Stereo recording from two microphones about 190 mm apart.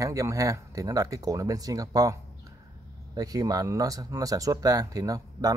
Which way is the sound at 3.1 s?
20° right (ahead or behind).